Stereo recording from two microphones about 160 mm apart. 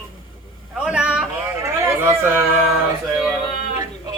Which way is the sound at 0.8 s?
5° right (ahead or behind).